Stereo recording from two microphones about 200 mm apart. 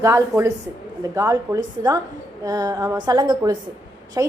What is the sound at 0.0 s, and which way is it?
A woman's voice, 15° right (ahead or behind).